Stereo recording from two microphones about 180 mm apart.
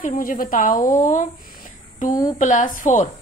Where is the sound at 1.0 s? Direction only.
45° left (ahead or behind).